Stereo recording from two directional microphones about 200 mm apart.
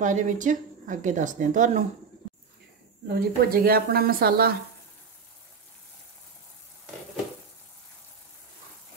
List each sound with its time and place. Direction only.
0.0 s speech: 40° right (ahead or behind)
3.1 s a woman's voice: 50° right (ahead or behind)